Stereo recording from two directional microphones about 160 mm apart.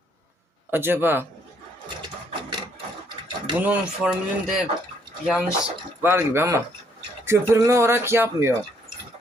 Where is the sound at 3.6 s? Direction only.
10° right (ahead or behind).